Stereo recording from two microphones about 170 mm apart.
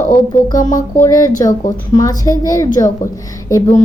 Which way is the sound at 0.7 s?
20° left (ahead or behind).